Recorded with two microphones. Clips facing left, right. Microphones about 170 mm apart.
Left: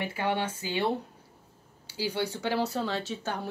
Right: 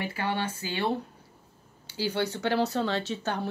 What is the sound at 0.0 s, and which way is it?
Speech, 20° left (ahead or behind).